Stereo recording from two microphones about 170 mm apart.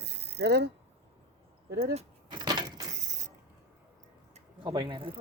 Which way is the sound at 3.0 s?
45° right (ahead or behind).